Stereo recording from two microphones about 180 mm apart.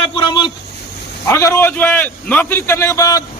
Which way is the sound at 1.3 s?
15° left (ahead or behind).